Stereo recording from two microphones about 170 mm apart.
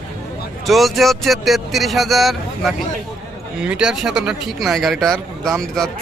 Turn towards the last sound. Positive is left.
turn(degrees=5)  # may be behind; listen again after turning